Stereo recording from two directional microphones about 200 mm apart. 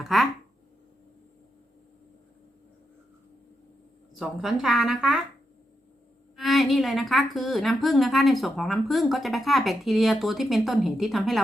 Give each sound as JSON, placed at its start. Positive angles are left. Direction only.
{"t": 0.0, "sound": "speech", "side_deg": 0}
{"t": 4.1, "sound": "a woman's voice", "side_deg": 0}
{"t": 6.3, "sound": "a woman's voice", "side_deg": 0}